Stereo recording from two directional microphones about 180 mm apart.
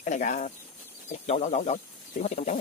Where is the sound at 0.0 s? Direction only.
45° left (ahead or behind).